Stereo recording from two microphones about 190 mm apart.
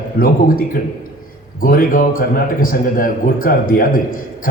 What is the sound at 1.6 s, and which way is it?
A man's voice, 50° left (ahead or behind).